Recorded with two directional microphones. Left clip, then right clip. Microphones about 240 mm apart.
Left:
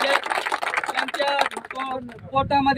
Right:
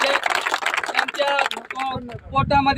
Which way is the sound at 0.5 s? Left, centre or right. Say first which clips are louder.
Right 3 dB; right.